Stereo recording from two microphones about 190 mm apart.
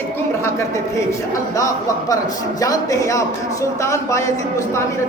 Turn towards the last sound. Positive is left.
turn(degrees=15)  # may be behind; listen again after turning